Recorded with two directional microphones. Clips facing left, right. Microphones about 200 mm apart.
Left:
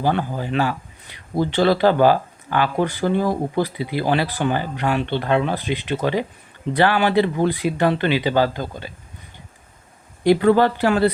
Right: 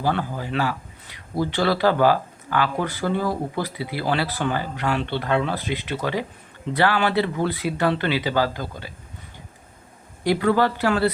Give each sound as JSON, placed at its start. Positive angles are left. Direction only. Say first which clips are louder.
{"t": 0.0, "sound": "speech", "louder": "left 3 dB", "side_deg": 20}
{"t": 10.2, "sound": "speech", "louder": "left 5 dB", "side_deg": 25}